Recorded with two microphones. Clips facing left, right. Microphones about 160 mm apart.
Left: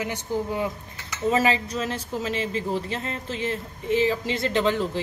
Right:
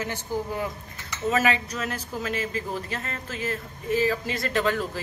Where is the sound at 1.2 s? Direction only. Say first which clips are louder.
Left 2 dB; 30° left (ahead or behind).